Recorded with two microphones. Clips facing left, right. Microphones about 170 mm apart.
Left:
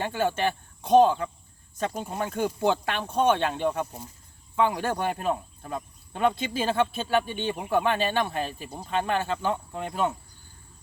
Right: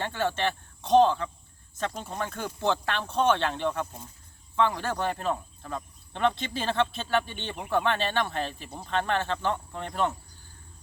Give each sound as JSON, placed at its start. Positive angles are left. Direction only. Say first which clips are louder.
{"t": 0.0, "sound": "speech", "louder": "left 2 dB", "side_deg": 15}